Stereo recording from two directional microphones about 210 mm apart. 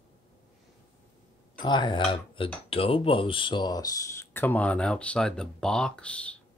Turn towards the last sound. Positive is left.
turn(degrees=5)  # may be behind; listen again after turning